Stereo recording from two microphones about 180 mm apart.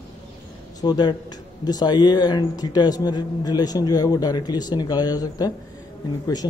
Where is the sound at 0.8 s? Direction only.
25° left (ahead or behind).